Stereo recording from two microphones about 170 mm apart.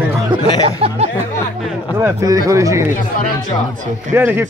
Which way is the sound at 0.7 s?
35° right (ahead or behind).